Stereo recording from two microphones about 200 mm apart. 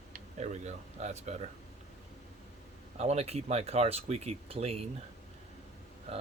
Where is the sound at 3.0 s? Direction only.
30° right (ahead or behind).